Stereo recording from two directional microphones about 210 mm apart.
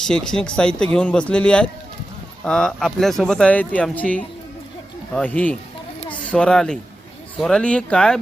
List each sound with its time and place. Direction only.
0.0 s a child's voice: 5° left (ahead or behind)